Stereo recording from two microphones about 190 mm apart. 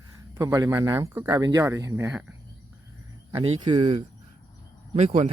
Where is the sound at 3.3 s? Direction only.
30° right (ahead or behind).